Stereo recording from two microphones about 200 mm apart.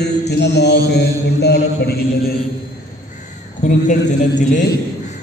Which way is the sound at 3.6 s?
40° left (ahead or behind).